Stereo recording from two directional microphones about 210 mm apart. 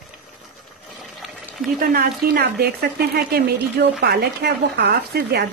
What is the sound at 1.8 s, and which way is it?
Speech, 50° right (ahead or behind).